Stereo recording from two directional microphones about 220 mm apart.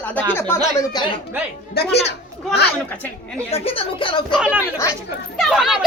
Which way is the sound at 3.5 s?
25° left (ahead or behind).